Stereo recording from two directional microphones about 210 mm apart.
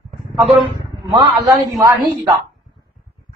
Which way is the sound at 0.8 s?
15° right (ahead or behind).